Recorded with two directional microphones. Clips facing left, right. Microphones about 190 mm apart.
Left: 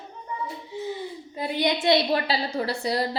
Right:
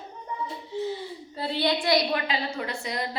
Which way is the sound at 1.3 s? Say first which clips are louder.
Left 1 dB; 15° left (ahead or behind).